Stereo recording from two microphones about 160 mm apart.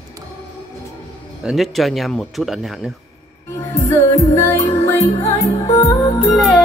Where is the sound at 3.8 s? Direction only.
20° left (ahead or behind).